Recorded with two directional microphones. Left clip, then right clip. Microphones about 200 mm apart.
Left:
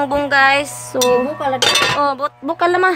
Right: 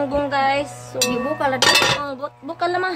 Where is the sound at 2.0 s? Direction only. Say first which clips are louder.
Left 10 dB; 55° left (ahead or behind).